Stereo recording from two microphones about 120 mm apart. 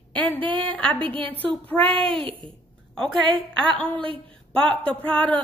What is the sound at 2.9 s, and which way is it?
Speech, 5° left (ahead or behind).